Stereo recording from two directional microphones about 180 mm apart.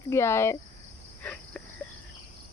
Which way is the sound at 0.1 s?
15° left (ahead or behind).